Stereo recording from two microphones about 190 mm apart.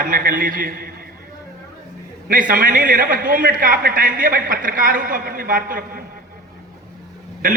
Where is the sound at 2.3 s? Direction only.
45° right (ahead or behind).